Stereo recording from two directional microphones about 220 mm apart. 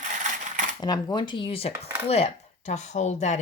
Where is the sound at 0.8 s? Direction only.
20° left (ahead or behind).